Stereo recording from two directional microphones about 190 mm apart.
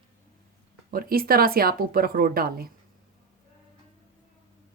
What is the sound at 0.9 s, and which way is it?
A woman's voice, 50° right (ahead or behind).